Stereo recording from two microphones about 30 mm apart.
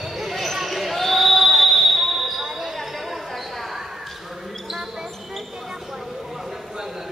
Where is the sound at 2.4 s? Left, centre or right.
Centre.